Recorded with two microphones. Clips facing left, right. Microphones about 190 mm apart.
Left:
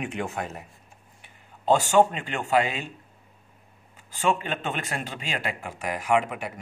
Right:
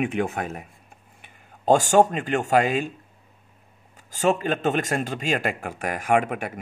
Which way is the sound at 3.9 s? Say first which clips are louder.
Right 4 dB; 40° right (ahead or behind).